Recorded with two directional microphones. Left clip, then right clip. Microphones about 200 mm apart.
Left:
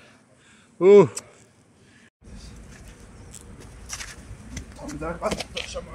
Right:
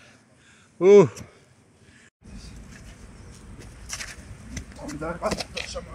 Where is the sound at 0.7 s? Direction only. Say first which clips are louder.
Left 1 dB; 10° left (ahead or behind).